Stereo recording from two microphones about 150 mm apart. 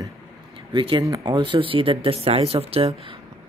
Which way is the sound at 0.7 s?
35° right (ahead or behind).